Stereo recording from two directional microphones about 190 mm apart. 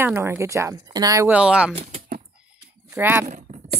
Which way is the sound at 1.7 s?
35° right (ahead or behind).